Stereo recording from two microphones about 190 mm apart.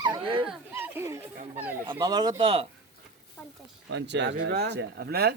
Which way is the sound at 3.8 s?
65° right (ahead or behind).